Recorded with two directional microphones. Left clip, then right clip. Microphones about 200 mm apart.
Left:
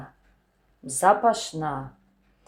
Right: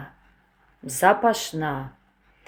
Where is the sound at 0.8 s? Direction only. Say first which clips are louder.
Right 1 dB; 25° right (ahead or behind).